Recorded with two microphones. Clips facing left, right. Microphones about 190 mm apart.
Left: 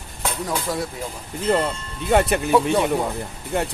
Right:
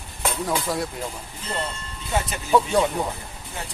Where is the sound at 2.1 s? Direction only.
60° left (ahead or behind).